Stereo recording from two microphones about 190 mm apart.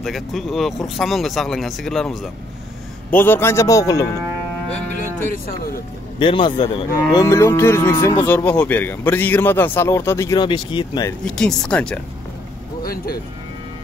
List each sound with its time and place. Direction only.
0.0 s a man's voice: centre (ahead or behind); by 4.1 s 15° left (ahead or behind)
6.1 s a man's voice: 25° left (ahead or behind)
6.9 s a man's voice: 15° left (ahead or behind)
11.2 s speech: 5° left (ahead or behind)
12.8 s speech: 50° left (ahead or behind)